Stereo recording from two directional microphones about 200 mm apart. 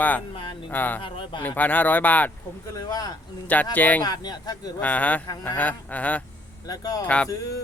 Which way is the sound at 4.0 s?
20° left (ahead or behind).